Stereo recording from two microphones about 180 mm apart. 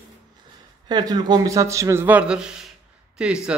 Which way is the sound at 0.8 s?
25° right (ahead or behind).